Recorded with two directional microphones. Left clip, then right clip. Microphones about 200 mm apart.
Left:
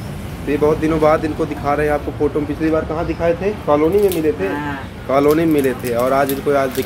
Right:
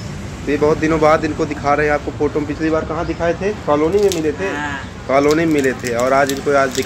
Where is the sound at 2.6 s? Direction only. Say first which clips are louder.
Left 1 dB; 5° right (ahead or behind).